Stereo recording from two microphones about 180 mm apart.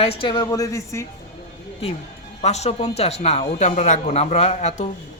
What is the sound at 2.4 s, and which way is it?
Speech, 35° left (ahead or behind).